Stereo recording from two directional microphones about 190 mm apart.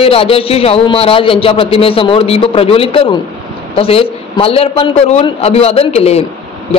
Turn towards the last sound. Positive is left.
turn(degrees=30)  # may be behind; listen again after turning